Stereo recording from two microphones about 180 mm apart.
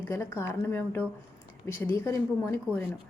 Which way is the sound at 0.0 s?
15° left (ahead or behind).